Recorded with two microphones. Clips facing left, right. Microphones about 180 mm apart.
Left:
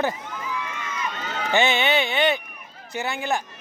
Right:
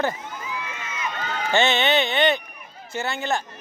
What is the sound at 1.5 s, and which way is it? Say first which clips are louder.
Speech: right 1 dB; 10° left (ahead or behind).